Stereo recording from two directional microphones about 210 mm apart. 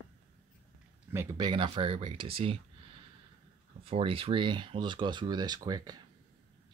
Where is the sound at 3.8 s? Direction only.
25° right (ahead or behind).